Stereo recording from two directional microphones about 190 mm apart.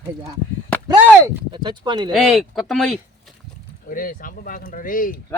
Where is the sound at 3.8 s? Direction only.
45° left (ahead or behind).